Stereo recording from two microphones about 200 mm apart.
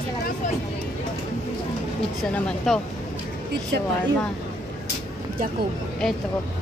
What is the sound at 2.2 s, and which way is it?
Speech, 5° left (ahead or behind).